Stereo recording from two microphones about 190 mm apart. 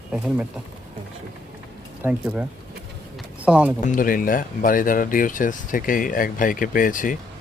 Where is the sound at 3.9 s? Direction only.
50° left (ahead or behind).